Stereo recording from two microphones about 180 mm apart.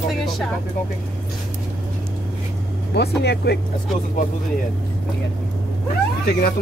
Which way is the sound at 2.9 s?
65° left (ahead or behind).